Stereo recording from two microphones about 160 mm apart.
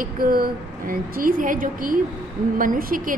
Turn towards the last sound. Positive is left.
turn(degrees=-60)  # may be behind; listen again after turning